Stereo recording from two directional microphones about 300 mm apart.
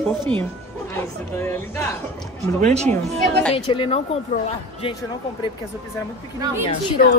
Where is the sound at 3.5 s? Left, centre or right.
Centre.